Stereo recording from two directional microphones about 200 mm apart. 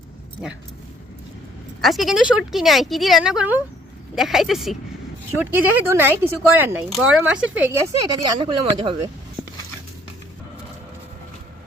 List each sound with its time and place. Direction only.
1.8 s speech: centre (ahead or behind)
8.4 s speech: 25° right (ahead or behind)